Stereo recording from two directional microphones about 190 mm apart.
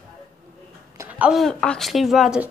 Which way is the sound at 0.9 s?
10° right (ahead or behind).